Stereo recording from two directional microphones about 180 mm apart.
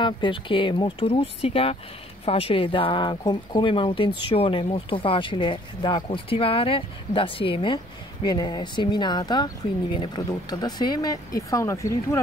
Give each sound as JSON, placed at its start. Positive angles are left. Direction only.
{"t": 0.0, "sound": "speech", "side_deg": 25}